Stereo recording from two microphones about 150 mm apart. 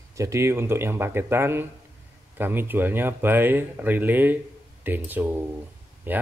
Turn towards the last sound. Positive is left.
turn(degrees=-15)  # may be behind; listen again after turning